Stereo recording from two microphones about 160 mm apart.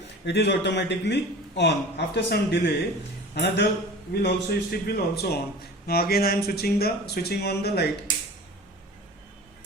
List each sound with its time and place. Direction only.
0.3 s a man's voice: 90° left